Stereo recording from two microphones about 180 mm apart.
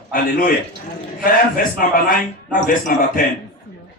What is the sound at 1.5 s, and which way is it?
A man's voice, 50° left (ahead or behind).